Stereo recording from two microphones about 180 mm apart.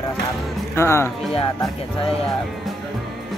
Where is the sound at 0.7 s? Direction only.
15° left (ahead or behind).